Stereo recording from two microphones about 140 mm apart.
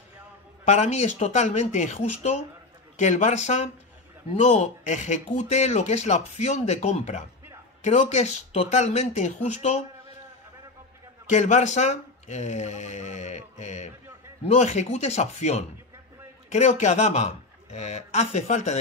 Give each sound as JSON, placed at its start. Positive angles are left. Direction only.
{"t": 0.7, "sound": "speech", "side_deg": 55}
{"t": 11.2, "sound": "speech", "side_deg": 55}